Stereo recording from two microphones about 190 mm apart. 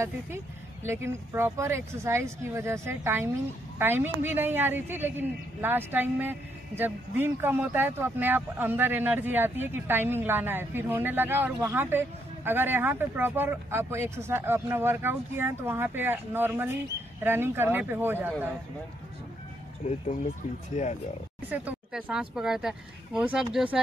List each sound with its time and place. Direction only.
0.8 s a woman's voice: 15° right (ahead or behind)
19.8 s speech: 35° left (ahead or behind)
21.5 s a woman's voice: 10° right (ahead or behind)